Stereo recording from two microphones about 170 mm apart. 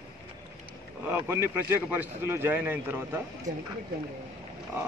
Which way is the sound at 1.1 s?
15° right (ahead or behind).